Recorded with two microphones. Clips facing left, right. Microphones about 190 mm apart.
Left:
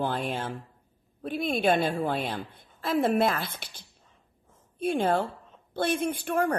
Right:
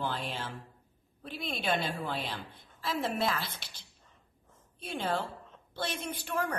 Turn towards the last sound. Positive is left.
turn(degrees=50)  # may be behind; listen again after turning